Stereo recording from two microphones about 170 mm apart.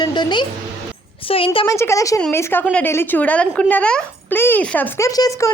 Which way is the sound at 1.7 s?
15° left (ahead or behind).